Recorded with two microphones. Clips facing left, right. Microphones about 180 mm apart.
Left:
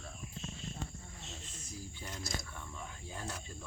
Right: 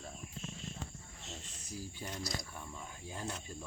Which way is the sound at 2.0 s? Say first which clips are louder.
Right 3 dB; 15° right (ahead or behind).